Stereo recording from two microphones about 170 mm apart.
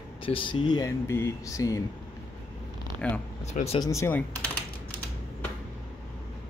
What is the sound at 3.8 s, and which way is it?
Speech, 15° left (ahead or behind).